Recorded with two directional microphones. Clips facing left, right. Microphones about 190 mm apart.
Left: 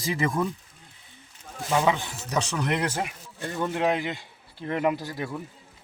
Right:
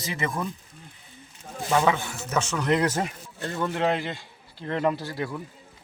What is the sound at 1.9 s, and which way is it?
Speech, 15° left (ahead or behind).